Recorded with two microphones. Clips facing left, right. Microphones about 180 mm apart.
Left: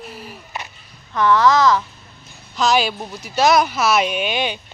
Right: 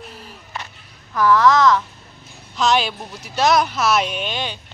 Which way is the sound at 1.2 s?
Centre (ahead or behind).